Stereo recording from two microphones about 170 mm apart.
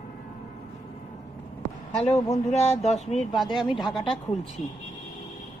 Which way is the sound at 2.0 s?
40° left (ahead or behind).